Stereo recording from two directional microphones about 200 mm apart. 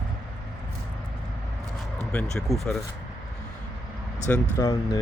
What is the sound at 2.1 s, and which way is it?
Speech, 5° left (ahead or behind).